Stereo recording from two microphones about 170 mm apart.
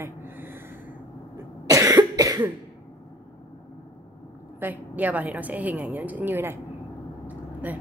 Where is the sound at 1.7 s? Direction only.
20° right (ahead or behind).